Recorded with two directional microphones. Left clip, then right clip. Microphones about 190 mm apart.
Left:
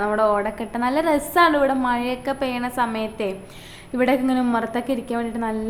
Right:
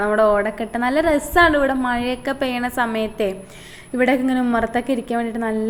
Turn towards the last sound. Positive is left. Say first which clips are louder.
# right 3 dB
turn(degrees=-15)  # may be behind; listen again after turning